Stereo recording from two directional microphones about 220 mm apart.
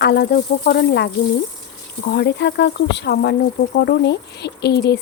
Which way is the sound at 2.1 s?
50° left (ahead or behind).